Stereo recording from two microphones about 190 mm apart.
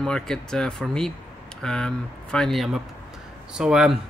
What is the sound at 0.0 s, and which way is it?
Speech, 5° left (ahead or behind).